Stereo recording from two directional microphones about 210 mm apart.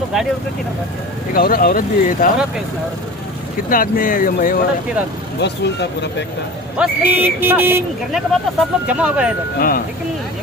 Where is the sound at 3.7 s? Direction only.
40° left (ahead or behind).